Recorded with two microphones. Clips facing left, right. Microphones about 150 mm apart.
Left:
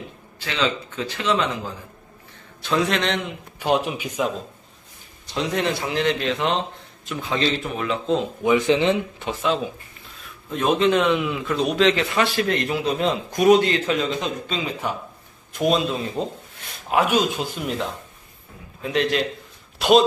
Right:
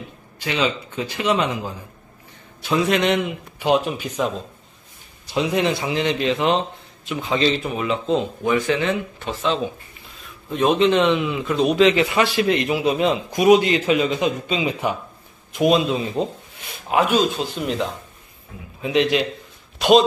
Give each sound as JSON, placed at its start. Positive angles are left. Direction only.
{"t": 0.4, "sound": "a man's voice", "side_deg": -15}
{"t": 2.6, "sound": "a man's voice", "side_deg": -10}
{"t": 3.8, "sound": "speech", "side_deg": 10}
{"t": 5.2, "sound": "a man's voice", "side_deg": -5}
{"t": 8.5, "sound": "speech", "side_deg": 20}
{"t": 9.2, "sound": "speech", "side_deg": 10}
{"t": 10.5, "sound": "a man's voice", "side_deg": 0}
{"t": 16.9, "sound": "a man's voice", "side_deg": 10}